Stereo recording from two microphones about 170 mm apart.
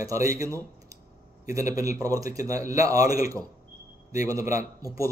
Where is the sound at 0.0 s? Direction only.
20° right (ahead or behind).